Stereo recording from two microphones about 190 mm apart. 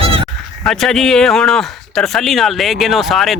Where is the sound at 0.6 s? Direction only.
Centre (ahead or behind).